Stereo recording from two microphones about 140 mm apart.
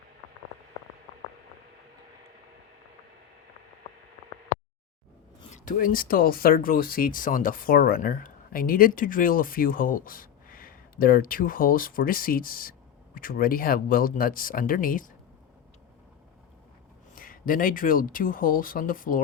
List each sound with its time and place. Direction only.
4.5 s a sound: 90° left
5.5 s speech: 75° left (ahead or behind)
17.2 s speech: 80° left